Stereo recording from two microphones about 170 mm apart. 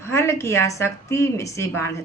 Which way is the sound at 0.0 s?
15° left (ahead or behind).